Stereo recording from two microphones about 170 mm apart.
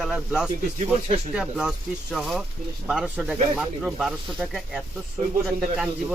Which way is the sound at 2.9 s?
5° right (ahead or behind).